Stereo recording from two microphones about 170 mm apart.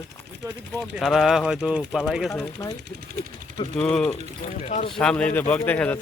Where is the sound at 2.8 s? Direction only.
75° right (ahead or behind).